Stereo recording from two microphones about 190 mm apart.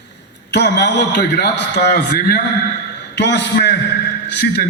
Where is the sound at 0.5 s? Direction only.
65° left (ahead or behind).